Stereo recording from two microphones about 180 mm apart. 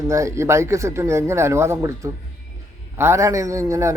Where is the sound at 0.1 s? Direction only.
15° right (ahead or behind).